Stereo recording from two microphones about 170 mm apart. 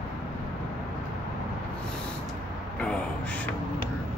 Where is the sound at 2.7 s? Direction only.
5° left (ahead or behind).